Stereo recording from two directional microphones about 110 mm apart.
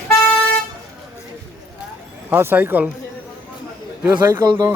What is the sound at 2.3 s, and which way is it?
Speech, 20° right (ahead or behind).